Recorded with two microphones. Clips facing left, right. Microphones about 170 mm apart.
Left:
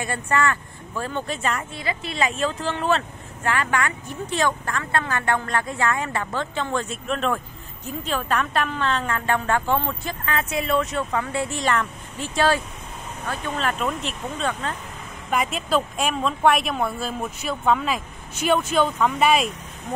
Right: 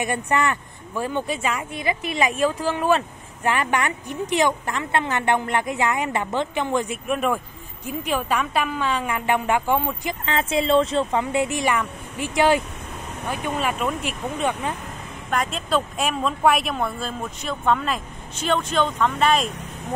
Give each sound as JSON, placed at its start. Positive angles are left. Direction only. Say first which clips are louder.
{"t": 0.0, "sound": "a woman's voice", "louder": "right 1 dB", "side_deg": -20}
{"t": 10.2, "sound": "a woman's voice", "louder": "right 3 dB", "side_deg": -25}
{"t": 15.2, "sound": "speech", "louder": "left 1 dB", "side_deg": 5}